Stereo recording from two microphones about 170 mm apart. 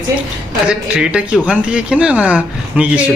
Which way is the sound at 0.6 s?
5° right (ahead or behind).